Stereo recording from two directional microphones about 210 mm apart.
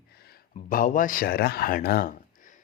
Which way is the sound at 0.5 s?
40° left (ahead or behind).